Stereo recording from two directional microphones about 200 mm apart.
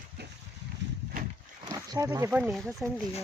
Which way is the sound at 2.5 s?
Centre (ahead or behind).